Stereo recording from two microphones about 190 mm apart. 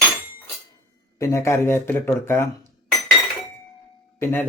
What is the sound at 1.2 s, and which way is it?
Speech, 15° left (ahead or behind).